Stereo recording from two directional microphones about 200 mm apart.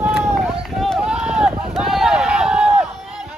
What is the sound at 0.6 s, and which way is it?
Run, centre (ahead or behind).